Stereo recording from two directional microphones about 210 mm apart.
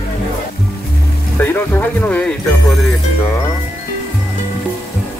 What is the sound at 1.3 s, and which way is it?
Speech, 10° left (ahead or behind).